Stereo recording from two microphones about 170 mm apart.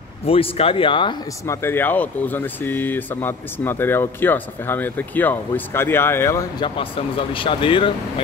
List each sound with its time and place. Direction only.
0.2 s speech: 35° left (ahead or behind)
1.4 s speech: 15° left (ahead or behind)
6.6 s speech: 30° left (ahead or behind)